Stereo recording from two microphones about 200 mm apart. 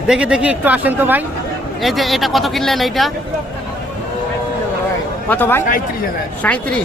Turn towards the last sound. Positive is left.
turn(degrees=5)  # may be behind; listen again after turning